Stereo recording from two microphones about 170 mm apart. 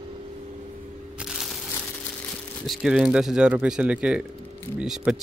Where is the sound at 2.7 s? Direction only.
Centre (ahead or behind).